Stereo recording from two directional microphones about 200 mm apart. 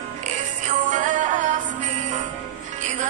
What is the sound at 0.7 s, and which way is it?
Music, 40° right (ahead or behind).